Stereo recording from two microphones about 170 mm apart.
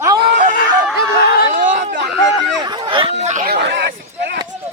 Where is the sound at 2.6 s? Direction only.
25° right (ahead or behind); by 3.4 s 40° right (ahead or behind).